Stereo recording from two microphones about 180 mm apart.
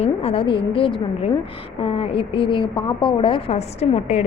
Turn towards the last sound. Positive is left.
turn(degrees=35)  # may be behind; listen again after turning